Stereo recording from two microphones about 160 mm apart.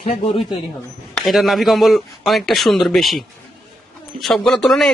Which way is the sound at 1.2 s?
Centre (ahead or behind).